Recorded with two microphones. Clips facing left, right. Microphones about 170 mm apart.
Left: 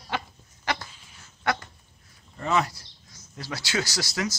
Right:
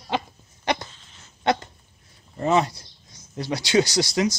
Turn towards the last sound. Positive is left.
turn(degrees=-20)  # may be behind; listen again after turning